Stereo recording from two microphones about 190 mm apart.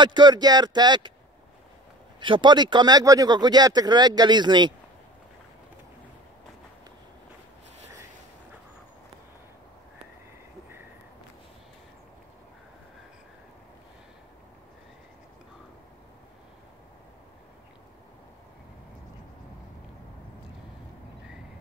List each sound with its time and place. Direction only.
0.0 s speech: 25° right (ahead or behind)
2.1 s speech: 25° right (ahead or behind)